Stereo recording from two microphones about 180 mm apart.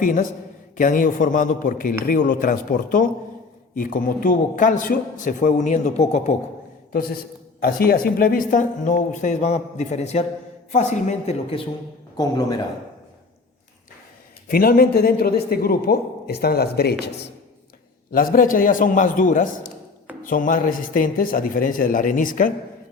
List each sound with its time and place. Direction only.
0.0 s speech: 50° left (ahead or behind)
7.6 s speech: 55° left (ahead or behind); by 11.6 s 35° left (ahead or behind)
12.1 s a man's voice: 20° left (ahead or behind)
14.4 s a man's voice: 55° left (ahead or behind)
18.1 s speech: 50° left (ahead or behind)